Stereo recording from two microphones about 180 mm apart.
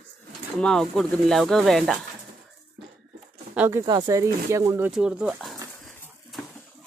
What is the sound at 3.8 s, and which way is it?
Speech, 20° right (ahead or behind).